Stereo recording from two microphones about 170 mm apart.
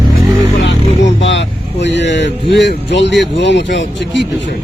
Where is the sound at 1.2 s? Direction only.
90° left.